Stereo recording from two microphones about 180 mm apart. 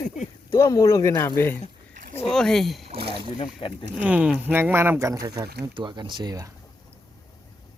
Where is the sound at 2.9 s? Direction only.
30° right (ahead or behind).